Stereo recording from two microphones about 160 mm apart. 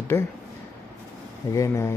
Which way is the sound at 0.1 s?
15° left (ahead or behind).